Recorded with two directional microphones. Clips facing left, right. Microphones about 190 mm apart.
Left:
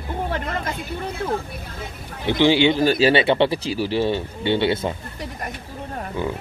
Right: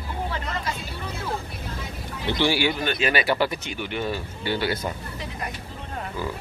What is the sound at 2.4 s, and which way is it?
Speech, 20° left (ahead or behind).